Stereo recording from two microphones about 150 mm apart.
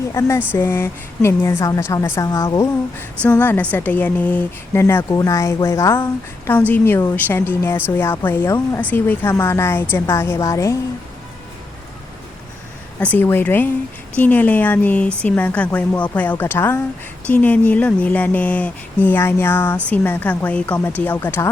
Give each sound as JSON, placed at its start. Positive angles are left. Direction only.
{"t": 0.1, "sound": "a woman's voice", "side_deg": 20}
{"t": 13.0, "sound": "a woman's voice", "side_deg": 10}